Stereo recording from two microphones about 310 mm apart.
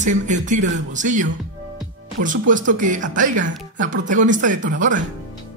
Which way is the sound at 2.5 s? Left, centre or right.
Right.